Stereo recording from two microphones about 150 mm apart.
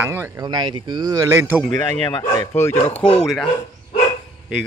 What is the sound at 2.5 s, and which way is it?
Speech, 15° left (ahead or behind).